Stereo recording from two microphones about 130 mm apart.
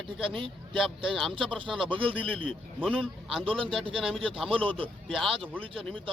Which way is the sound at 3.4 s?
45° right (ahead or behind).